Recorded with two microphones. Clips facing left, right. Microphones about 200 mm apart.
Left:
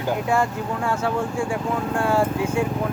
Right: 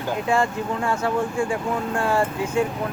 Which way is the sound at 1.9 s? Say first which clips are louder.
Left 2 dB; 5° left (ahead or behind).